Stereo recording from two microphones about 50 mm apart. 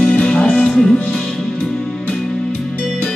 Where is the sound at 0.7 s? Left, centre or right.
Centre.